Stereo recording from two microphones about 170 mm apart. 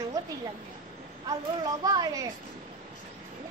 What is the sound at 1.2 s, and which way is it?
Speech, 25° right (ahead or behind).